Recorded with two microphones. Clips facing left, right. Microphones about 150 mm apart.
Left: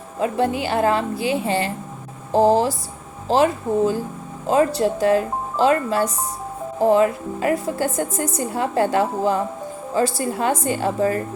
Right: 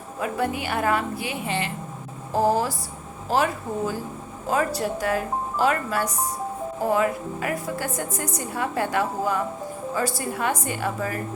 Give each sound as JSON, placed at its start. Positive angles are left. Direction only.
{"t": 0.2, "sound": "a woman's voice", "side_deg": 25}